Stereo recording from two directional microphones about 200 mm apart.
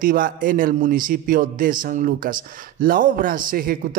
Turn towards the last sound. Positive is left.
turn(degrees=-45)  # may be behind; listen again after turning